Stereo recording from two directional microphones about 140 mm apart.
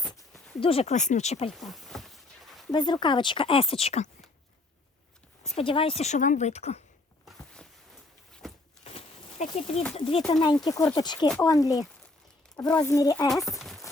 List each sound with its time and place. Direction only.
0.6 s speech: 45° left (ahead or behind)
1.5 s a sound: centre (ahead or behind)
2.7 s speech: 30° left (ahead or behind); by 4.1 s 50° left (ahead or behind)
5.4 s speech: 45° left (ahead or behind)
7.3 s a sound: 5° left (ahead or behind)
8.8 s a sound: 45° left (ahead or behind)
9.9 s speech: 45° left (ahead or behind)
10.4 s speech: 30° left (ahead or behind)
12.6 s speech: 10° left (ahead or behind)
12.9 s speech: 25° left (ahead or behind)
13.2 s speech: centre (ahead or behind)
13.6 s clip-clop: centre (ahead or behind)